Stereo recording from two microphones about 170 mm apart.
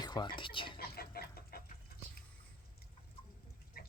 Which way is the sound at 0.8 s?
65° left (ahead or behind).